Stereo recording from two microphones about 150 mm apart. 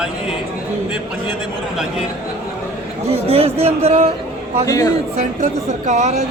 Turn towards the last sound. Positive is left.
turn(degrees=-50)  # may be behind; listen again after turning